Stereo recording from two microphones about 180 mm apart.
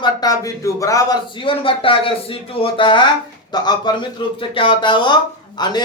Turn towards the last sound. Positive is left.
turn(degrees=25)  # may be behind; listen again after turning